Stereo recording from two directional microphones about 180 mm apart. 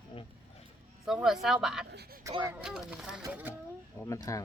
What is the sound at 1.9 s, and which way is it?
Speech, 60° right (ahead or behind).